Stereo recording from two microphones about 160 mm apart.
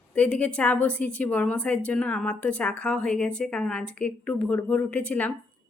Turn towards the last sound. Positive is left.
turn(degrees=10)  # may be behind; listen again after turning